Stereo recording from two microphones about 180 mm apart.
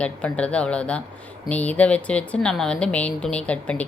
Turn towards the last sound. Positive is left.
turn(degrees=5)  # may be behind; listen again after turning